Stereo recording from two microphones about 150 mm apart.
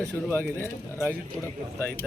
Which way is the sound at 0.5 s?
15° left (ahead or behind).